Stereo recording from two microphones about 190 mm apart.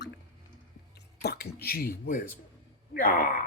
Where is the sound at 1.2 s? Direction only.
55° left (ahead or behind).